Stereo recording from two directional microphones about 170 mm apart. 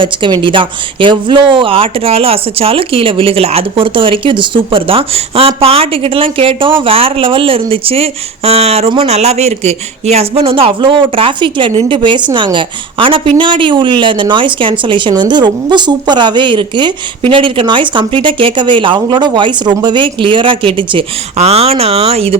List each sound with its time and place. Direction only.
0.0 s a woman's voice: 25° right (ahead or behind)